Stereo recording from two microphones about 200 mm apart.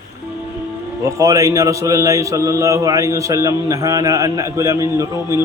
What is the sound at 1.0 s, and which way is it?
A man's voice, 15° right (ahead or behind).